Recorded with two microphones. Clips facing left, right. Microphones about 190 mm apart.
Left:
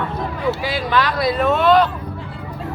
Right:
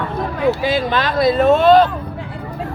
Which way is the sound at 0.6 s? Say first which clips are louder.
Right 2 dB; 25° right (ahead or behind).